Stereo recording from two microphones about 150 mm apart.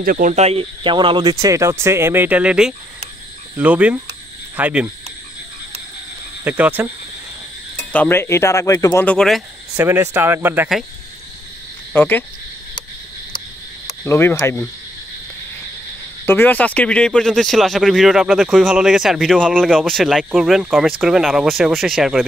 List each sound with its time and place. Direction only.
0.0 s speech: 70° right (ahead or behind); by 4.9 s 10° right (ahead or behind)
6.4 s speech: 10° right (ahead or behind)
7.7 s speech: 10° left (ahead or behind)
9.8 s speech: 15° right (ahead or behind)
11.9 s speech: 15° left (ahead or behind)
14.0 s speech: 15° left (ahead or behind)
16.3 s speech: 15° left (ahead or behind)